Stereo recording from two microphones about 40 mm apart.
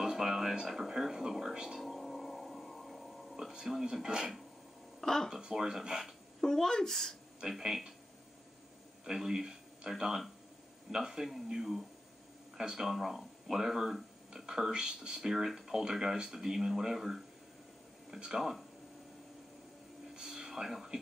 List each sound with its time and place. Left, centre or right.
0.0 s a sound: centre
0.7 s speech: centre
1.9 s music: centre
3.9 s speech: centre
5.0 s a woman's voice: centre
5.4 s speech: centre
6.4 s a woman's voice: centre
7.4 s speech: centre
9.0 s speech: centre
15.1 s speech: centre
20.2 s a sound: centre